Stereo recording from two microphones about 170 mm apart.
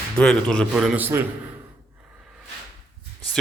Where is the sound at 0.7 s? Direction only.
5° right (ahead or behind).